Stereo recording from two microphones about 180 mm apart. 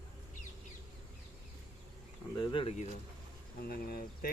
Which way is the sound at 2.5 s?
30° left (ahead or behind).